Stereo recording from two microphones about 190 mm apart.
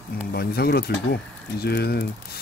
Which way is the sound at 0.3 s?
55° left (ahead or behind).